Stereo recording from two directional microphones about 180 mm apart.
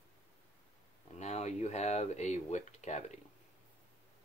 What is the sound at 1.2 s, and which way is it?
Speech, 40° left (ahead or behind).